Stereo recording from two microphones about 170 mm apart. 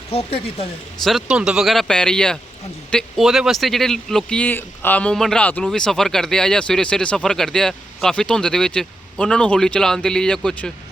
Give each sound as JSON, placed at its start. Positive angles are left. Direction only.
{"t": 0.1, "sound": "speech", "side_deg": 35}
{"t": 1.0, "sound": "speech", "side_deg": 0}